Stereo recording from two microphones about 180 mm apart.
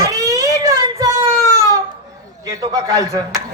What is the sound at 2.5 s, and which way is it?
Speech, 20° right (ahead or behind).